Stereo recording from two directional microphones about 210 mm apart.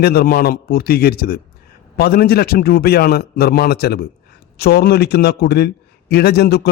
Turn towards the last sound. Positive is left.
turn(degrees=50)  # may be behind; listen again after turning